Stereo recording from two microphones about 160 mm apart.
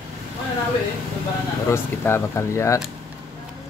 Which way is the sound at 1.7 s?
15° left (ahead or behind).